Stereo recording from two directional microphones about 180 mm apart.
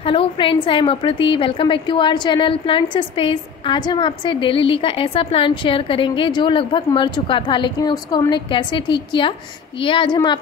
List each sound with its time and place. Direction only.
0.0 s a woman's voice: 30° left (ahead or behind)